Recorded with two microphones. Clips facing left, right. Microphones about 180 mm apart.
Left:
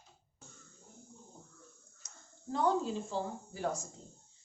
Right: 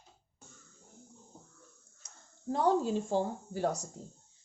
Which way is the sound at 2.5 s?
50° right (ahead or behind).